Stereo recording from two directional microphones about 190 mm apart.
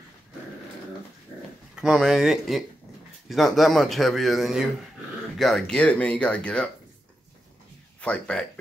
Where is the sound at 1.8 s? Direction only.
Centre (ahead or behind).